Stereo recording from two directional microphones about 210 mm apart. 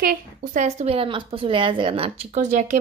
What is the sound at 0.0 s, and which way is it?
A woman's voice, 40° right (ahead or behind).